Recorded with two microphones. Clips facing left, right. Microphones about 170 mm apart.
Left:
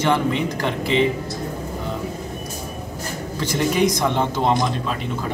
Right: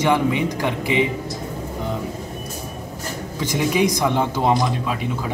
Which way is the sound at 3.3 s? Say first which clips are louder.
Even; 15° right (ahead or behind).